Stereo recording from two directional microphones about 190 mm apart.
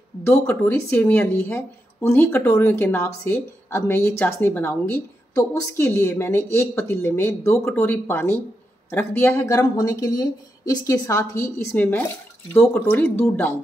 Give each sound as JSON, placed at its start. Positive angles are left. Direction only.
{"t": 0.2, "sound": "a woman's voice", "side_deg": 10}